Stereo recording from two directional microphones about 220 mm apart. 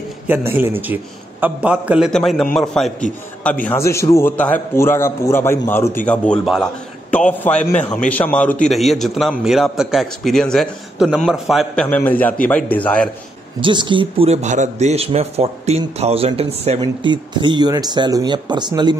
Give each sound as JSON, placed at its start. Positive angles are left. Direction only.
{"t": 0.3, "sound": "a man's voice", "side_deg": -10}
{"t": 13.6, "sound": "speech", "side_deg": -20}